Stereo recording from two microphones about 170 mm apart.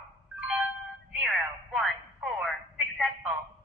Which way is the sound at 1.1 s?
5° right (ahead or behind).